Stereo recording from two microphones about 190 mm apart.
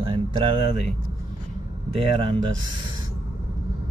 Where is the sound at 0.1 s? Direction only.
25° right (ahead or behind).